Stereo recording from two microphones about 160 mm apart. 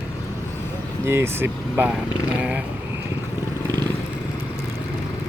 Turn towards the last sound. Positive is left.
turn(degrees=-25)  # may be behind; listen again after turning